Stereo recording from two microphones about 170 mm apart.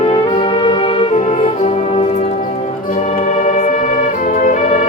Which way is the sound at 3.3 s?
45° left (ahead or behind).